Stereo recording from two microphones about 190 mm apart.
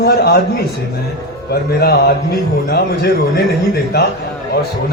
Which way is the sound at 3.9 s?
60° left (ahead or behind).